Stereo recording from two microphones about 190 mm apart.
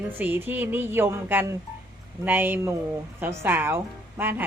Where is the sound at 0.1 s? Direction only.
10° right (ahead or behind).